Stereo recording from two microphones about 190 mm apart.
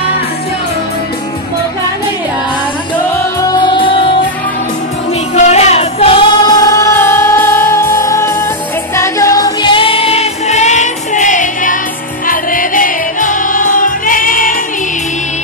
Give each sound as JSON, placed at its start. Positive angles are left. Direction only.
{"t": 3.2, "sound": "music", "side_deg": 20}
{"t": 5.3, "sound": "music", "side_deg": 35}